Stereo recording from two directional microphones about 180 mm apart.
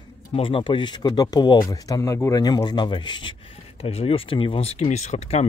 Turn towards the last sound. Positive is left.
turn(degrees=35)  # may be behind; listen again after turning